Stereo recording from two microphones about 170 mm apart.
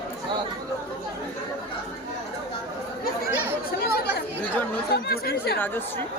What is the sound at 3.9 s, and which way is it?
Chatter, 70° left (ahead or behind).